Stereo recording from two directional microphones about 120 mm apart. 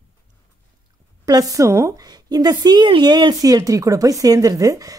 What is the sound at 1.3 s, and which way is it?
A woman's voice, 30° right (ahead or behind).